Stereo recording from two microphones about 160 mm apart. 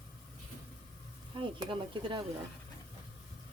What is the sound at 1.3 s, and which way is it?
Speech, 35° right (ahead or behind).